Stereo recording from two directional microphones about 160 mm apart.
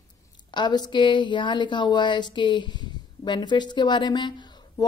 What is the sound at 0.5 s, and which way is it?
A woman's voice, 25° left (ahead or behind).